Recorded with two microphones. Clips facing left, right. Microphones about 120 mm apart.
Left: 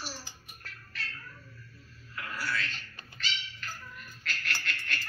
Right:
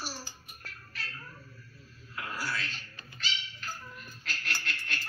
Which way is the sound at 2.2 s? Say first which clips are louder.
Left 1 dB; 35° right (ahead or behind).